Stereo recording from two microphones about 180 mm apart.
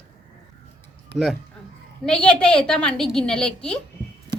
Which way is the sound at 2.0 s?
5° left (ahead or behind).